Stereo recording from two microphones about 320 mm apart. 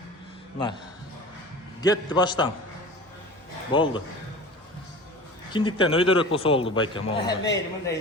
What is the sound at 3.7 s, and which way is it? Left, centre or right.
Speech, centre.